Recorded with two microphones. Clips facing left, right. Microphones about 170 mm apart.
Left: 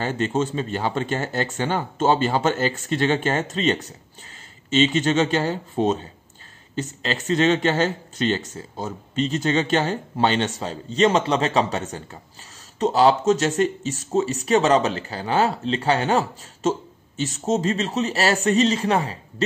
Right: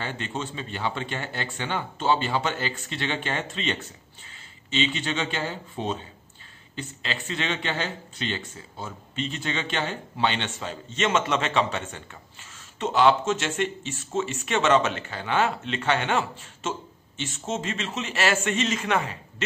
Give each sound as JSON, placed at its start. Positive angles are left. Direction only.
{"t": 0.0, "sound": "speech", "side_deg": 45}